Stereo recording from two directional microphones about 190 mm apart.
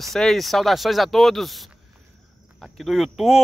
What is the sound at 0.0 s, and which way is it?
Speech, centre (ahead or behind).